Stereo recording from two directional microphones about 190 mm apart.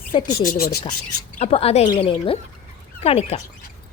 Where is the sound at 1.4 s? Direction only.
30° left (ahead or behind).